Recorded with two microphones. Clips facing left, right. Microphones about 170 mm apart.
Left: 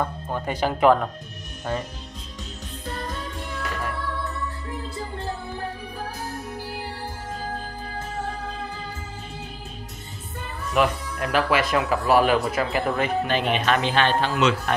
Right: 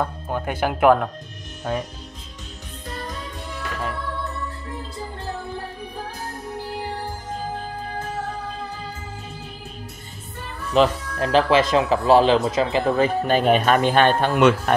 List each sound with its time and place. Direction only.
0.0 s speech: 5° right (ahead or behind)
10.7 s speech: 30° right (ahead or behind)
13.2 s speech: 40° right (ahead or behind)